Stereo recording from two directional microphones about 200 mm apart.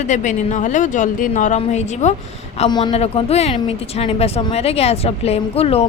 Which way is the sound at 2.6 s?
20° left (ahead or behind).